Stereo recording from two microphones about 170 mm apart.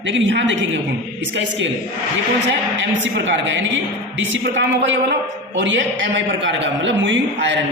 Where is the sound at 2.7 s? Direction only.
90° right.